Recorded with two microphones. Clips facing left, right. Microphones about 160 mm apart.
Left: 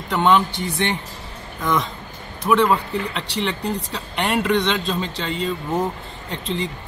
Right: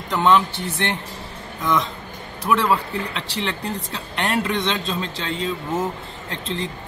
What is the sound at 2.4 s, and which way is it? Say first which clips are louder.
Speech: left 2 dB; centre (ahead or behind).